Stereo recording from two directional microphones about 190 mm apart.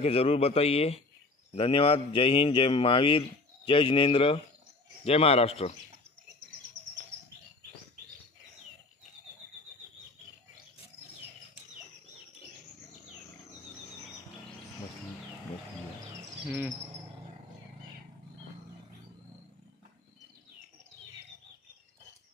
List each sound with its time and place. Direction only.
0.0 s a man's voice: 30° left (ahead or behind)
16.4 s dog: 10° right (ahead or behind)